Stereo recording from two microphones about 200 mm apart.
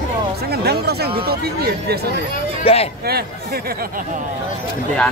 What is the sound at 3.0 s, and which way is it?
Speech, 50° right (ahead or behind).